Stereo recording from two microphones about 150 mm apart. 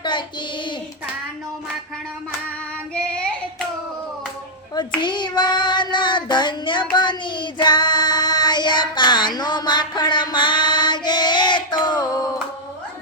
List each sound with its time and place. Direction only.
0.0 s child singing: 30° left (ahead or behind)
2.9 s child singing: 5° left (ahead or behind)
4.9 s child singing: 30° left (ahead or behind)